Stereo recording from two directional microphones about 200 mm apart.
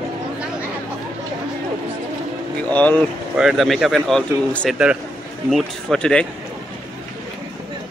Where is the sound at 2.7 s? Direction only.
5° left (ahead or behind).